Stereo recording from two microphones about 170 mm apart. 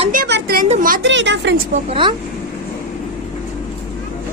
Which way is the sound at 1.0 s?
90° right.